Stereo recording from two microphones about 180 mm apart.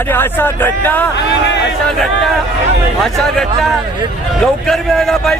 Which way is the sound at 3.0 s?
Centre (ahead or behind).